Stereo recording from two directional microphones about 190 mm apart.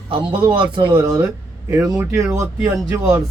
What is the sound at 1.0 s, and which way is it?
Speech, 10° right (ahead or behind).